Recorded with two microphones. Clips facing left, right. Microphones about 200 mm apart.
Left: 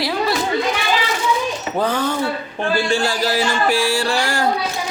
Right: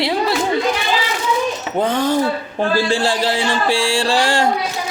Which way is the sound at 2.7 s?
30° right (ahead or behind).